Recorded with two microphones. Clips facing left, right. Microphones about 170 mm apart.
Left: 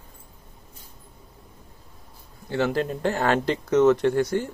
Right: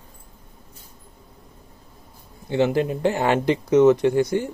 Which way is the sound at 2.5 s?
15° right (ahead or behind).